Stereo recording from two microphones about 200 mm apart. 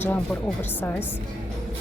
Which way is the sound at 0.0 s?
10° left (ahead or behind).